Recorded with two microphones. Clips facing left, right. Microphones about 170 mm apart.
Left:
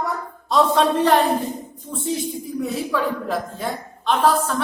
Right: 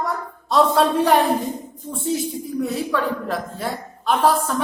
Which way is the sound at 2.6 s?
Centre (ahead or behind).